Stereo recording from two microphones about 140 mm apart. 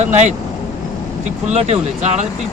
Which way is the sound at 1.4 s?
55° right (ahead or behind).